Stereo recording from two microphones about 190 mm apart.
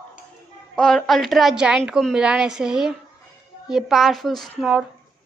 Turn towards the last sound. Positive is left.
turn(degrees=0)  # may be behind; listen again after turning